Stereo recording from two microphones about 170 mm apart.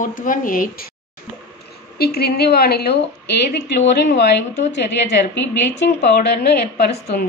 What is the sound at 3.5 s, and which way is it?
A woman's voice, 80° left.